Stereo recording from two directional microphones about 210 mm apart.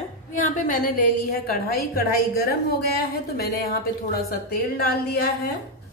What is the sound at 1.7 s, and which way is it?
A woman's voice, 45° left (ahead or behind).